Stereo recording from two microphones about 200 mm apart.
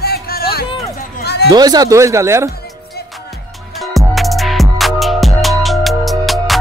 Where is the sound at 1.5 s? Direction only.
20° right (ahead or behind).